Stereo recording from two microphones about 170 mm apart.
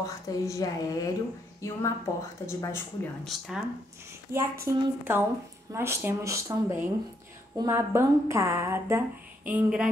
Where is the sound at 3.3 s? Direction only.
Centre (ahead or behind).